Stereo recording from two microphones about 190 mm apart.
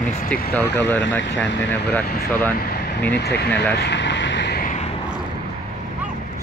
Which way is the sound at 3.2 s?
60° left (ahead or behind).